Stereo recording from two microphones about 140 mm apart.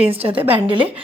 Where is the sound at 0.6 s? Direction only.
40° right (ahead or behind).